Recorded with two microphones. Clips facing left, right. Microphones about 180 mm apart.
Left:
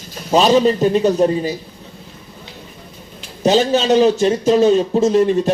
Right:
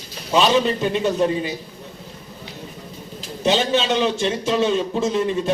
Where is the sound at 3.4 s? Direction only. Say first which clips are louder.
Left 5 dB; 40° left (ahead or behind).